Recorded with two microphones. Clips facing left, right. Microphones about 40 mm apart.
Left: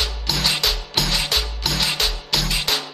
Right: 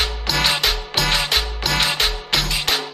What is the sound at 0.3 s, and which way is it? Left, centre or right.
Music, centre.